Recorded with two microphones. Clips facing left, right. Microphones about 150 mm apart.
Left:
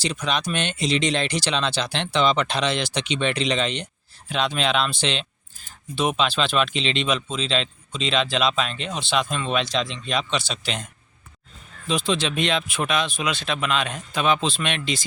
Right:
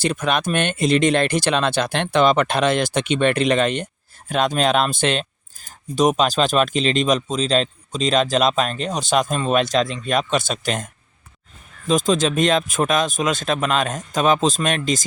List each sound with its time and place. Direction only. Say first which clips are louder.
0.0 s speech: right 5 dB; 50° right (ahead or behind)
11.9 s speech: right 6 dB; 45° right (ahead or behind)